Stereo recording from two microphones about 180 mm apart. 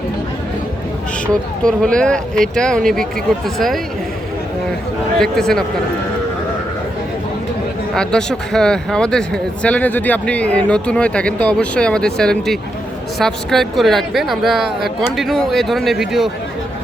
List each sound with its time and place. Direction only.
1.3 s speech: 5° left (ahead or behind)
5.2 s speech: 5° left (ahead or behind)
7.9 s speech: 5° left (ahead or behind)